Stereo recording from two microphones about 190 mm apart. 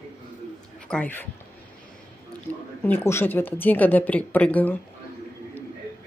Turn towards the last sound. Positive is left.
turn(degrees=10)  # may be behind; listen again after turning